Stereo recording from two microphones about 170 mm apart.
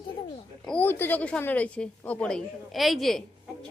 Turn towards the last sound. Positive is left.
turn(degrees=0)  # may be behind; listen again after turning